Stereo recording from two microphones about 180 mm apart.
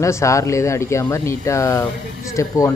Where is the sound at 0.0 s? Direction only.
15° left (ahead or behind).